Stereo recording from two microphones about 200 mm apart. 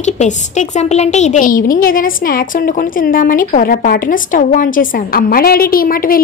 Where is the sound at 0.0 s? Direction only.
35° left (ahead or behind).